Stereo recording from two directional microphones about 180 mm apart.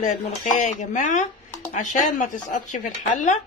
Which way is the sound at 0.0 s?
45° left (ahead or behind).